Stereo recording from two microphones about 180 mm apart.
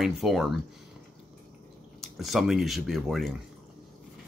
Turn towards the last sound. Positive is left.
turn(degrees=0)  # may be behind; listen again after turning